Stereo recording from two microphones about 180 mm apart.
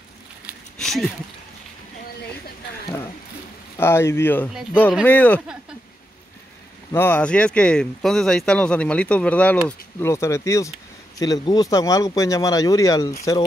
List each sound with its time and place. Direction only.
0.7 s a sound: centre (ahead or behind)
3.7 s speech: 15° left (ahead or behind)
6.9 s speech: 10° left (ahead or behind)